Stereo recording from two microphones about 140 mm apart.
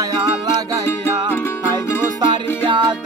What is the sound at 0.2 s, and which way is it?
Music, 30° right (ahead or behind).